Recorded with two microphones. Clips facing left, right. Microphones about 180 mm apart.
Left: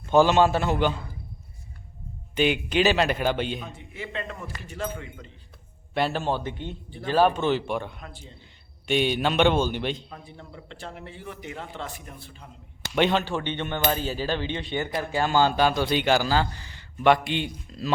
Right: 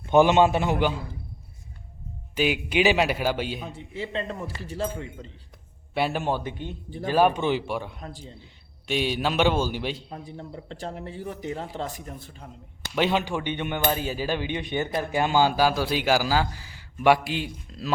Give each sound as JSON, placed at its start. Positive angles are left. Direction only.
{"t": 0.1, "sound": "speech", "side_deg": -20}
{"t": 2.3, "sound": "speech", "side_deg": -5}
{"t": 3.8, "sound": "speech", "side_deg": -30}
{"t": 5.9, "sound": "speech", "side_deg": -10}
{"t": 8.0, "sound": "a man's voice", "side_deg": -35}
{"t": 8.9, "sound": "a man's voice", "side_deg": 0}
{"t": 10.1, "sound": "a man's voice", "side_deg": -35}
{"t": 13.0, "sound": "speech", "side_deg": -10}